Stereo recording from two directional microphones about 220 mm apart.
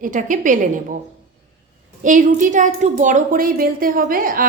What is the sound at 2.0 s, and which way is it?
A woman's voice, 35° right (ahead or behind).